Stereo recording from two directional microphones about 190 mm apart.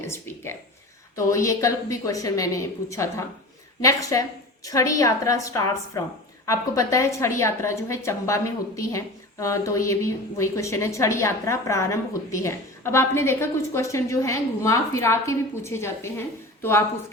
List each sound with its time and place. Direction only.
0.1 s a woman's voice: 15° left (ahead or behind)